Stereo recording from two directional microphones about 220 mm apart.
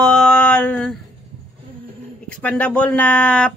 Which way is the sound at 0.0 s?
5° left (ahead or behind).